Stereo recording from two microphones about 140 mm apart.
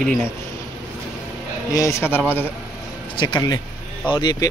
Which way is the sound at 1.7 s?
20° left (ahead or behind).